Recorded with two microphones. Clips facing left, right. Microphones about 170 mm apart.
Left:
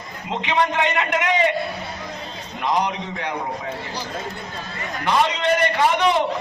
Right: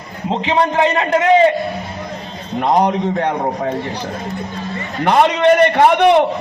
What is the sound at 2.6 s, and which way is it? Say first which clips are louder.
A man's voice: right 8 dB; 50° right (ahead or behind).